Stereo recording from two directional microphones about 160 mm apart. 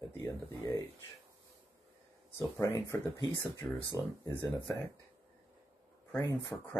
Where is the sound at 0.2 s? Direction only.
15° left (ahead or behind).